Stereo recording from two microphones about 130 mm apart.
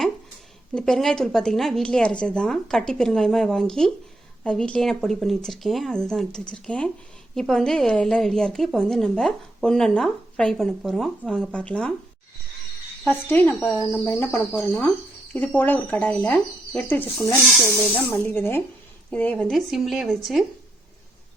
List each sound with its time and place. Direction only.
0.7 s a woman's voice: 5° left (ahead or behind)
13.1 s speech: 15° left (ahead or behind)
18.1 s a woman's voice: 15° left (ahead or behind)